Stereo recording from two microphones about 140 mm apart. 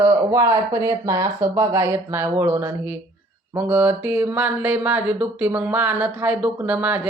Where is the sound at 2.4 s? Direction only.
15° right (ahead or behind).